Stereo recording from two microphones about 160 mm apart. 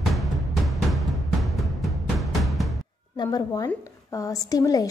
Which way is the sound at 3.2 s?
25° left (ahead or behind).